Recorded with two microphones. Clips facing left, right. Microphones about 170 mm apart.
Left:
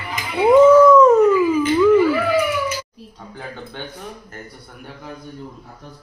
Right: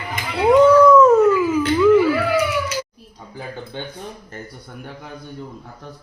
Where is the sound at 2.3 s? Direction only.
75° right (ahead or behind).